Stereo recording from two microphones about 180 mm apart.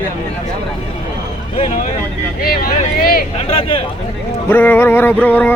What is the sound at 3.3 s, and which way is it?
Speech, 30° left (ahead or behind).